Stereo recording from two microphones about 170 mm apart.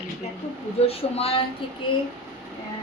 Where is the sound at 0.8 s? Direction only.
35° left (ahead or behind).